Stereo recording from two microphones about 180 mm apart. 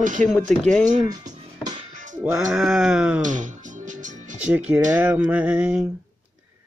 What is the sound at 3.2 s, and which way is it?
Music, 45° right (ahead or behind).